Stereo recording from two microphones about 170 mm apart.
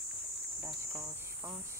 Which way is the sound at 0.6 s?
15° right (ahead or behind).